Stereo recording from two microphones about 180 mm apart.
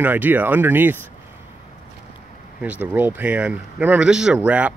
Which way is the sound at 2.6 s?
10° right (ahead or behind).